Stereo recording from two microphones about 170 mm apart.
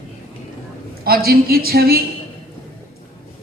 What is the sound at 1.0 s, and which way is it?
Speech, 60° right (ahead or behind).